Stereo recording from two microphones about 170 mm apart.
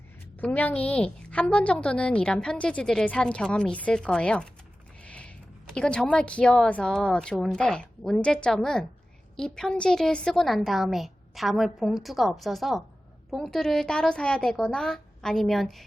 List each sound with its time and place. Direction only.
0.3 s a woman's voice: 10° left (ahead or behind)
4.9 s a sound: 5° left (ahead or behind)
5.7 s a woman's voice: 5° left (ahead or behind)